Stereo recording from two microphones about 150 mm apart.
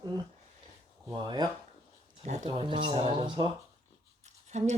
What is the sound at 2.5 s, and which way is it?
Speech, 35° right (ahead or behind).